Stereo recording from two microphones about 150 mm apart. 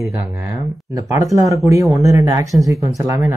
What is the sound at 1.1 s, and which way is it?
Speech, 20° right (ahead or behind).